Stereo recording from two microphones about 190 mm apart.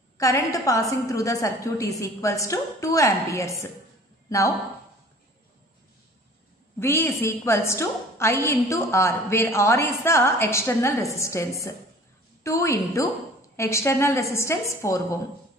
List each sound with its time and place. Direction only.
0.2 s a woman's voice: 15° left (ahead or behind)
6.8 s a woman's voice: 15° left (ahead or behind)